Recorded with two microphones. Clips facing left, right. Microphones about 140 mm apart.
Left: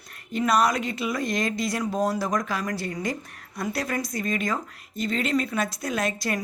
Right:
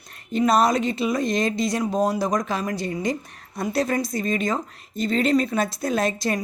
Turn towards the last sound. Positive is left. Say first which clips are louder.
# right 4 dB
turn(degrees=-30)  # may be behind; listen again after turning